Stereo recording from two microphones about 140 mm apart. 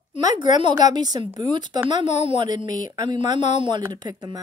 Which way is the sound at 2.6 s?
65° left (ahead or behind).